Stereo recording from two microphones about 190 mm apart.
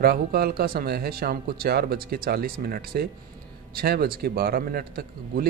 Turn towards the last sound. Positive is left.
turn(degrees=-50)  # may be behind; listen again after turning